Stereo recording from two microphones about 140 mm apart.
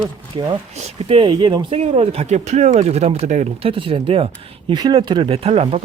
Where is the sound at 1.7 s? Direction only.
45° right (ahead or behind).